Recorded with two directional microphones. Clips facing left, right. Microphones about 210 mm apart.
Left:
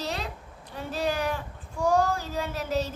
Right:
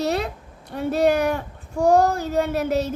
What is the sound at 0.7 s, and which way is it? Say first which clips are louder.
Speech: right 10 dB; 65° right (ahead or behind).